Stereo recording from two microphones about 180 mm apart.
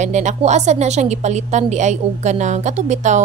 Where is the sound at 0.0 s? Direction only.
40° right (ahead or behind).